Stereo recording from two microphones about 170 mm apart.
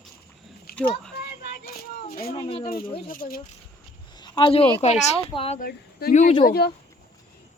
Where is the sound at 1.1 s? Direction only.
65° left (ahead or behind).